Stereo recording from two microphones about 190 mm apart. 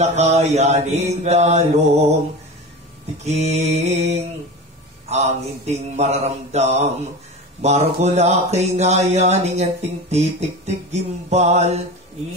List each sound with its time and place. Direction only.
0.0 s speech: 35° right (ahead or behind)
3.3 s speech: 35° right (ahead or behind)